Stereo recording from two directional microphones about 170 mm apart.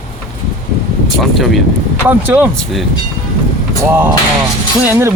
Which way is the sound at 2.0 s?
10° right (ahead or behind).